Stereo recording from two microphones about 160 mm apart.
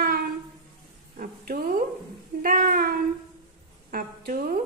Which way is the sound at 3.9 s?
60° right (ahead or behind).